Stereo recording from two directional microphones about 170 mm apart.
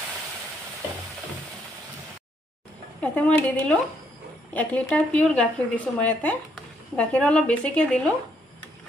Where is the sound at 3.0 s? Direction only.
10° left (ahead or behind).